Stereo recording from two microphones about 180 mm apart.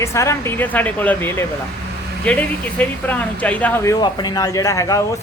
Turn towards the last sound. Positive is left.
turn(degrees=15)  # may be behind; listen again after turning